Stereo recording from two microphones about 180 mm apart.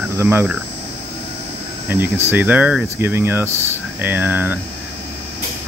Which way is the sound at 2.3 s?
10° right (ahead or behind).